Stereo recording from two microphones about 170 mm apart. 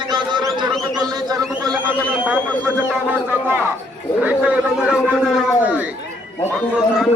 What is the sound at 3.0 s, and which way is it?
A man's voice, 15° right (ahead or behind).